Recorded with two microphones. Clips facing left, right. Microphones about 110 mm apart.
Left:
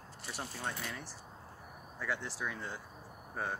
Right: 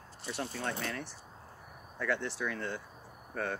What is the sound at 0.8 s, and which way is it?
Speech, 10° left (ahead or behind).